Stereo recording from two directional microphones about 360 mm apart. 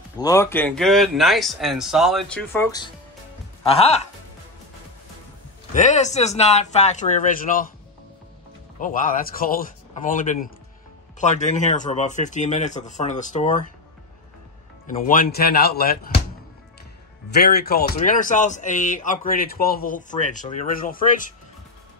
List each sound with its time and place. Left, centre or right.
0.2 s speech: centre
5.8 s speech: centre
8.7 s speech: left
14.9 s speech: left
17.3 s speech: left